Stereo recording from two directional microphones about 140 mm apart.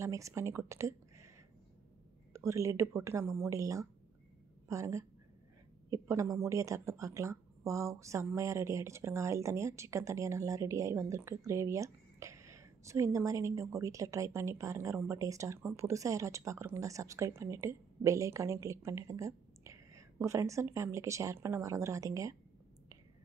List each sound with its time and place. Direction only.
0.0 s speech: 20° right (ahead or behind)
2.3 s speech: 20° right (ahead or behind)